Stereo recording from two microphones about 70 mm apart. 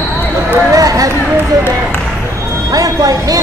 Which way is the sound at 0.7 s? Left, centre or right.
Right.